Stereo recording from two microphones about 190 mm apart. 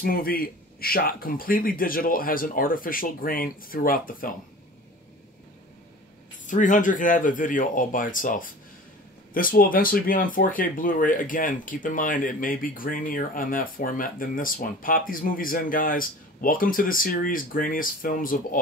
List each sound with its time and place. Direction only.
0.0 s speech: 50° left (ahead or behind)
6.4 s speech: 40° left (ahead or behind)